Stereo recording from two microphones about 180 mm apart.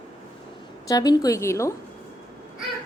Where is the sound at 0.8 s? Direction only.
20° left (ahead or behind).